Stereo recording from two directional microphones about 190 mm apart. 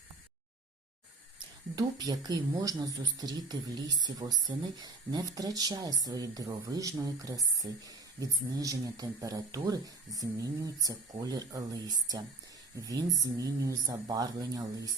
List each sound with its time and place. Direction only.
1.7 s speech: 20° right (ahead or behind)